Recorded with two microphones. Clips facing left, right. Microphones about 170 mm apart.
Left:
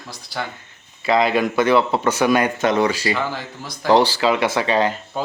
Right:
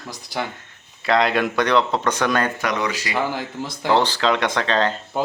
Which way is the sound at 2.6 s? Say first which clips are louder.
Left 6 dB; 30° left (ahead or behind).